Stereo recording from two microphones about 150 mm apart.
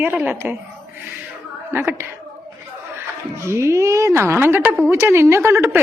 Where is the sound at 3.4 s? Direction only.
20° right (ahead or behind).